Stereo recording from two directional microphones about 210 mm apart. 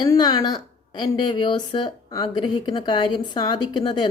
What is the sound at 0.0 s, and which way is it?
Speech, 20° left (ahead or behind).